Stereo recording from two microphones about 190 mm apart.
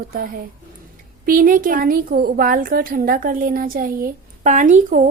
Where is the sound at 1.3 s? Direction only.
45° right (ahead or behind).